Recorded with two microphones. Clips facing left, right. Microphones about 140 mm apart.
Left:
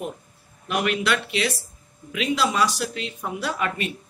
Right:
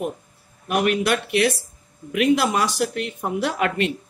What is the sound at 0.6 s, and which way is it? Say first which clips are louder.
Speech: right 3 dB; 50° right (ahead or behind).